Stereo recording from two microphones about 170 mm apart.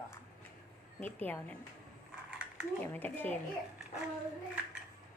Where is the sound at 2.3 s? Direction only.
5° right (ahead or behind).